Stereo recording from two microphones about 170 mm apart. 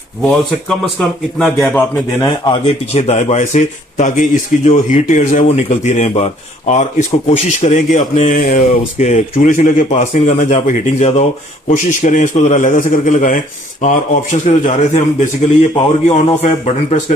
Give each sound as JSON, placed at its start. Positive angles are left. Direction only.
{"t": 1.4, "sound": "a man's voice", "side_deg": 5}
{"t": 2.2, "sound": "speech", "side_deg": 30}
{"t": 5.6, "sound": "speech", "side_deg": 45}